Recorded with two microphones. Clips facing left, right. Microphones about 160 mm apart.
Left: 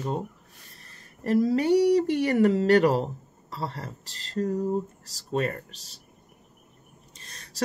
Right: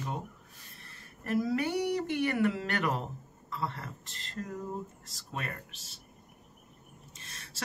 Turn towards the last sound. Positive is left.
turn(degrees=40)  # may be behind; listen again after turning